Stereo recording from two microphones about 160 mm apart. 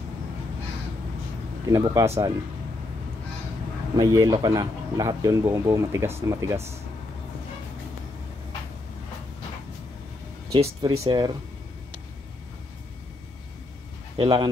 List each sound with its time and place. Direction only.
1.7 s speech: 20° right (ahead or behind)
3.9 s speech: 25° right (ahead or behind)
10.8 s speech: 25° right (ahead or behind)
14.1 s speech: 30° right (ahead or behind)